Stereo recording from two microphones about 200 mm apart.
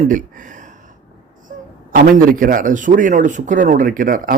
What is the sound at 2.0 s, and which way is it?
A man's voice, 40° right (ahead or behind).